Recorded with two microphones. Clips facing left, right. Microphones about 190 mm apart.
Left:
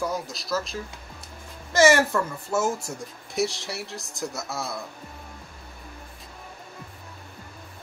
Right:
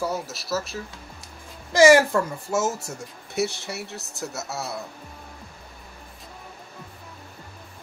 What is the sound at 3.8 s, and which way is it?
Speech, 65° right (ahead or behind).